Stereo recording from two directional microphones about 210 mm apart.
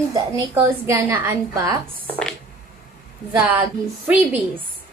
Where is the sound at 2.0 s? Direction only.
5° left (ahead or behind).